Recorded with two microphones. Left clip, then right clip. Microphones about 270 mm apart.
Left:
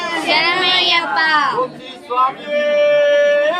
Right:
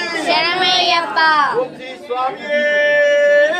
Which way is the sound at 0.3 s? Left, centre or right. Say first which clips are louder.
Even; centre.